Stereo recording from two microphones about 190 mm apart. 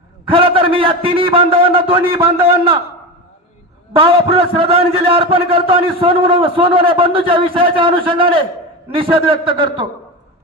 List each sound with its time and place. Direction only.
0.3 s a man's voice: 30° right (ahead or behind)
3.9 s a man's voice: 30° right (ahead or behind)